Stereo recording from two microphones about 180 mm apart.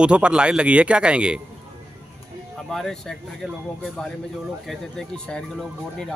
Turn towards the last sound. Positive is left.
turn(degrees=5)  # may be behind; listen again after turning